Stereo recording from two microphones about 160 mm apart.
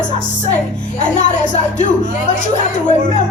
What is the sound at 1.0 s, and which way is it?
Speech, 50° left (ahead or behind).